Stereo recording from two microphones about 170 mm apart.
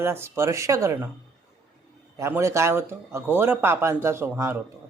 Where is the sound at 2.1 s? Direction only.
15° right (ahead or behind).